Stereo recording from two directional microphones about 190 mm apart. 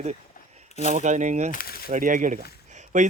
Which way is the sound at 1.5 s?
50° left (ahead or behind).